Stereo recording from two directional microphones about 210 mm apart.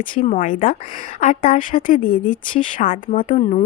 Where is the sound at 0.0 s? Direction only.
40° left (ahead or behind).